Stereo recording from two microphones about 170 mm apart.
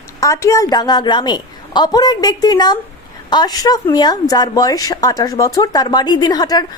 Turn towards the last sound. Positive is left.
turn(degrees=25)  # may be behind; listen again after turning